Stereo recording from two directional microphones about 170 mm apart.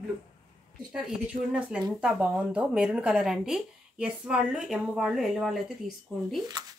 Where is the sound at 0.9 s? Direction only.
5° right (ahead or behind).